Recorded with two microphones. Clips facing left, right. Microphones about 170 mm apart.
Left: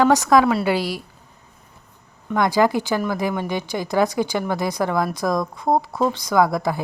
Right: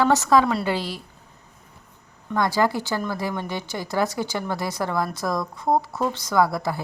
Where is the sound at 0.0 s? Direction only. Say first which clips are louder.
Left 3 dB; 15° left (ahead or behind).